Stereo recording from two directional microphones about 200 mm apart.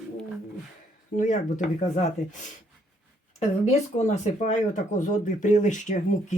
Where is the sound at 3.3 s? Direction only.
35° left (ahead or behind).